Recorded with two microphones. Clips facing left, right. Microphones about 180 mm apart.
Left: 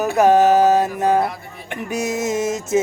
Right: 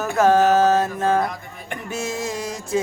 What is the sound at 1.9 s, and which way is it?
Music, 20° left (ahead or behind).